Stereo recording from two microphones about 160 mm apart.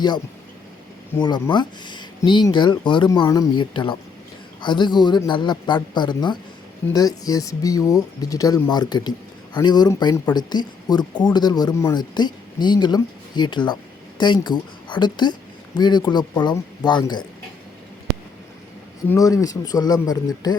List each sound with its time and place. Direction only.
1.2 s speech: 30° left (ahead or behind)
19.0 s speech: 20° left (ahead or behind)